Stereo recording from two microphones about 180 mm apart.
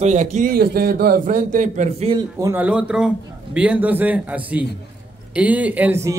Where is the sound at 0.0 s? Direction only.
40° right (ahead or behind).